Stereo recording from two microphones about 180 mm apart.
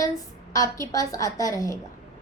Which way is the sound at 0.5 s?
20° left (ahead or behind).